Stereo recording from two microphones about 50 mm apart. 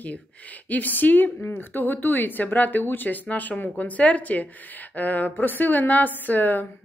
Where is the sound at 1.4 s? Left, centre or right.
Left.